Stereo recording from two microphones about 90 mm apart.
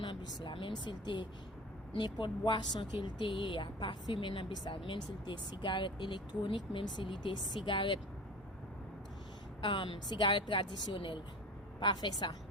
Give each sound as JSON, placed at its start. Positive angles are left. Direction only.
{"t": 0.0, "sound": "speech", "side_deg": 50}
{"t": 9.6, "sound": "speech", "side_deg": 60}